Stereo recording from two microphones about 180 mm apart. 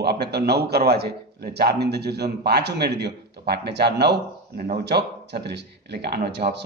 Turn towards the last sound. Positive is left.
turn(degrees=-70)  # may be behind; listen again after turning